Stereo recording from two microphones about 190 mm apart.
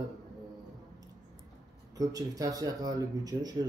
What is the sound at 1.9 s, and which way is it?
Speech, 20° right (ahead or behind).